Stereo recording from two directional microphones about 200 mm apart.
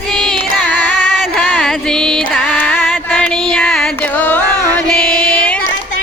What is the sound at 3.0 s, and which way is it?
Music, 5° left (ahead or behind).